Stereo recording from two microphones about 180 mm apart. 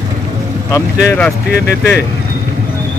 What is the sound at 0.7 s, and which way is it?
Speech, 15° left (ahead or behind).